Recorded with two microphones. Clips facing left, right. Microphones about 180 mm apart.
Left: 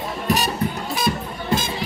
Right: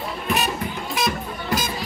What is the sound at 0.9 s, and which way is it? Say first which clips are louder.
Music: left 1 dB; 30° left (ahead or behind).